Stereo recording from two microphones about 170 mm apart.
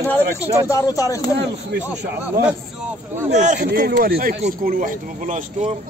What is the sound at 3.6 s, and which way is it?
Speech, 65° right (ahead or behind).